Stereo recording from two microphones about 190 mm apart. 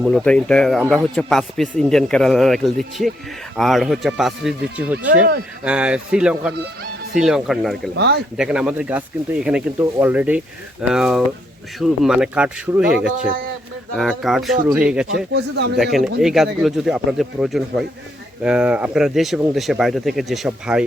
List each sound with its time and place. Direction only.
0.0 s speech: centre (ahead or behind)
5.6 s speech: 5° right (ahead or behind)
7.9 s speech: 60° right (ahead or behind)
8.4 s speech: 5° right (ahead or behind)
12.9 s speech: 55° right (ahead or behind)
13.9 s speech: centre (ahead or behind)
15.1 s speech: 65° right (ahead or behind)
15.7 s speech: centre (ahead or behind)